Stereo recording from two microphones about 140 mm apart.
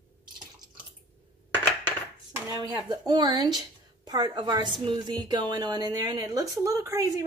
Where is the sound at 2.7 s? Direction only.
35° right (ahead or behind).